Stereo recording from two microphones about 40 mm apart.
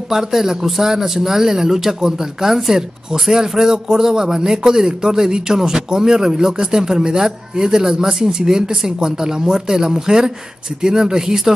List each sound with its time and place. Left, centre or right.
0.1 s a man's voice: centre